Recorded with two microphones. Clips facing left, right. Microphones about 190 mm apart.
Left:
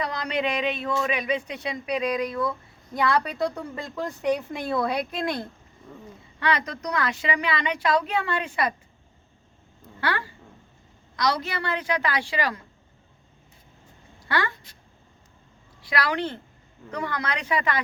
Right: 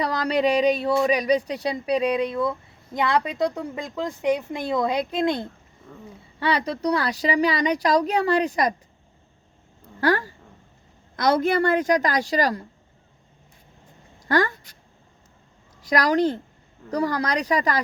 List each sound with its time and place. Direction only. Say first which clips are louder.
0.0 s speech: right 5 dB; 35° right (ahead or behind)
6.4 s speech: right 4 dB; 30° right (ahead or behind)
10.0 s a woman's voice: right 7 dB; 40° right (ahead or behind)
14.2 s a sound: right 6 dB; 45° right (ahead or behind)
15.8 s a woman's voice: right 7 dB; 40° right (ahead or behind)